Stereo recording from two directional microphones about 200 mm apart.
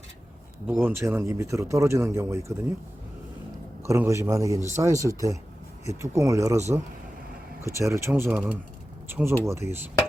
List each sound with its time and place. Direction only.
0.7 s speech: 10° right (ahead or behind)
3.8 s speech: 15° right (ahead or behind)
7.6 s speech: 15° right (ahead or behind)